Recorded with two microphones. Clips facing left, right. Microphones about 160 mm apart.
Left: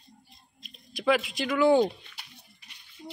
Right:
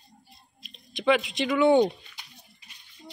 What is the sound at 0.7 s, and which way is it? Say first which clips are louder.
Speech: right 2 dB; 5° left (ahead or behind).